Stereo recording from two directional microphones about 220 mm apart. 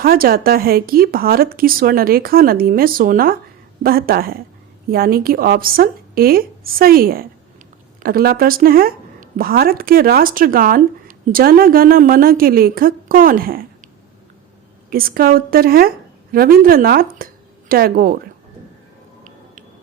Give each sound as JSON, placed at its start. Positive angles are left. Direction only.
{"t": 0.0, "sound": "a woman's voice", "side_deg": -45}
{"t": 14.8, "sound": "a woman's voice", "side_deg": -40}